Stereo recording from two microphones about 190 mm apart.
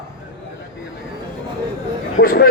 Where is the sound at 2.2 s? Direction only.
50° left (ahead or behind).